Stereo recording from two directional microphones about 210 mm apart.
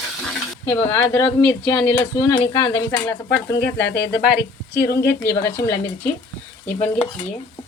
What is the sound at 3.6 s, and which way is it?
Speech, 55° left (ahead or behind).